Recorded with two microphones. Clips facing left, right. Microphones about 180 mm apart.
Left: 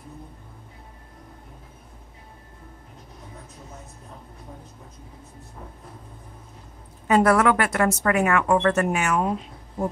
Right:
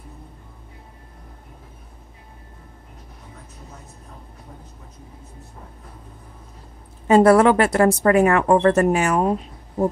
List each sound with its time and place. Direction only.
7.1 s speech: 30° right (ahead or behind)